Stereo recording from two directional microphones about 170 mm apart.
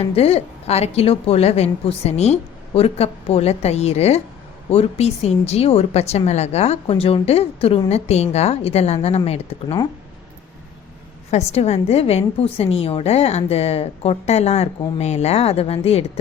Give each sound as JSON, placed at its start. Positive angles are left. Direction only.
{"t": 0.0, "sound": "a woman's voice", "side_deg": 35}
{"t": 11.3, "sound": "a woman's voice", "side_deg": 40}